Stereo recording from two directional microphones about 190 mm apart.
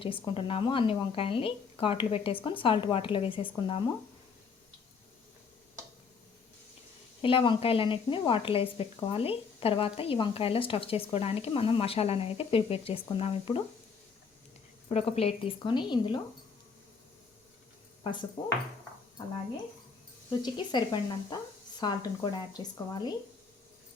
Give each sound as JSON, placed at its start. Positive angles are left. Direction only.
{"t": 0.3, "sound": "a woman's voice", "side_deg": 30}
{"t": 7.2, "sound": "a woman's voice", "side_deg": 30}
{"t": 14.8, "sound": "a woman's voice", "side_deg": 35}
{"t": 18.0, "sound": "speech", "side_deg": 25}
{"t": 20.4, "sound": "a woman's voice", "side_deg": 25}